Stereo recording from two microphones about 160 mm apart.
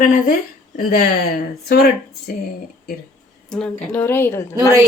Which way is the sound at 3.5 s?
5° left (ahead or behind).